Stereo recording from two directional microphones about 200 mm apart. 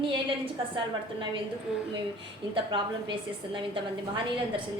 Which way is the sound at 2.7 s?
25° right (ahead or behind).